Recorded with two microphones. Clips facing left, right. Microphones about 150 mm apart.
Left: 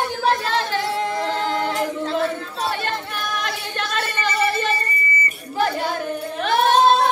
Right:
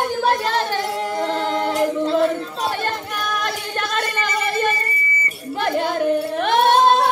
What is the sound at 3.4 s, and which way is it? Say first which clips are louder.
Singing: right 2 dB; 50° right (ahead or behind).